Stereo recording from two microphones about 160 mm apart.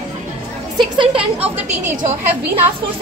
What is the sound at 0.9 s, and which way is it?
Speech, 35° right (ahead or behind).